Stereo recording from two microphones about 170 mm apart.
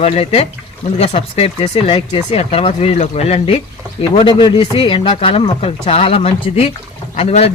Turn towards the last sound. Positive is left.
turn(degrees=40)  # may be behind; listen again after turning